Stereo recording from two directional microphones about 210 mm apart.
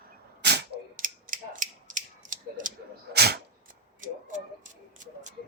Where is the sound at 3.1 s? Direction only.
50° right (ahead or behind).